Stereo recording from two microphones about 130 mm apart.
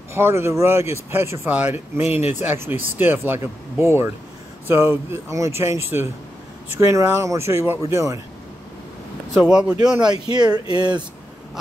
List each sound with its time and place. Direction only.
0.1 s speech: 20° right (ahead or behind)
9.3 s speech: 5° right (ahead or behind)
10.3 s speech: 35° right (ahead or behind)